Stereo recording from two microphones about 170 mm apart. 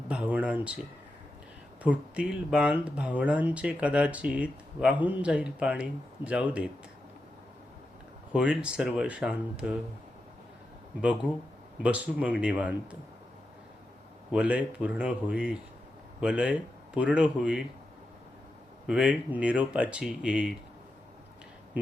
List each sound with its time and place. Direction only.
0.1 s speech: 5° right (ahead or behind)
1.8 s speech: 10° right (ahead or behind)
8.3 s speech: 5° right (ahead or behind)
11.0 s speech: 5° right (ahead or behind)
14.3 s speech: 5° right (ahead or behind)
18.9 s speech: 5° right (ahead or behind)